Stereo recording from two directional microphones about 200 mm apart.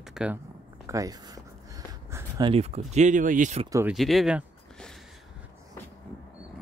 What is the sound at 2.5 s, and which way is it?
Speech, 30° right (ahead or behind).